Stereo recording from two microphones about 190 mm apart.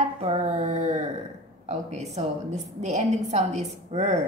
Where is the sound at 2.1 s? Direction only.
35° right (ahead or behind).